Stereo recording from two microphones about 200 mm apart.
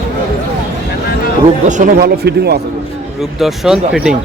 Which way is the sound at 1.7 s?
40° right (ahead or behind).